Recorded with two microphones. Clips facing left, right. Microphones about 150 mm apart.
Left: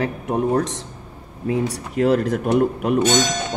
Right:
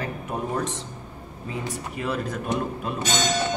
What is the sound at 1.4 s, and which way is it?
Speech, 75° left (ahead or behind).